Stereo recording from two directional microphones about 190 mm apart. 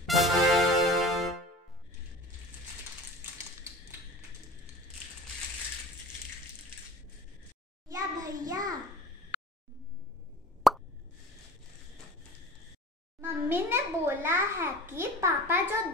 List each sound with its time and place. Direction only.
0.0 s music: centre (ahead or behind)
7.9 s a sound: 20° right (ahead or behind)
10.6 s plop: centre (ahead or behind)
13.2 s a child's voice: 10° right (ahead or behind)